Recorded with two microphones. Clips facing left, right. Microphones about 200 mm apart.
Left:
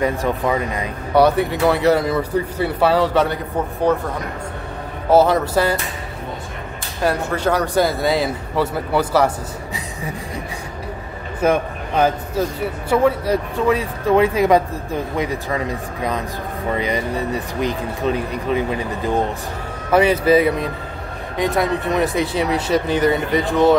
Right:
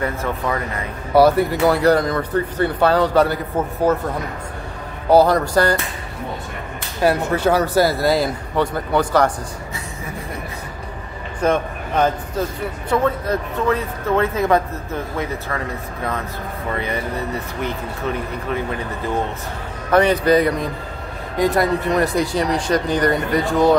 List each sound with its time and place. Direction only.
0.0 s speech: 15° left (ahead or behind)
1.1 s speech: centre (ahead or behind)
5.1 s speech: centre (ahead or behind)
7.0 s speech: 10° right (ahead or behind)
11.4 s speech: 10° left (ahead or behind)
19.9 s speech: 5° left (ahead or behind)